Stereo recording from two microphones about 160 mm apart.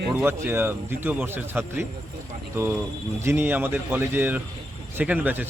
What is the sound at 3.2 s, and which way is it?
A man's voice, 15° right (ahead or behind).